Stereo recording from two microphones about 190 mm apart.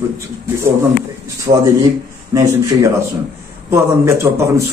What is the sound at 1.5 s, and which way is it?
Speech, 40° right (ahead or behind).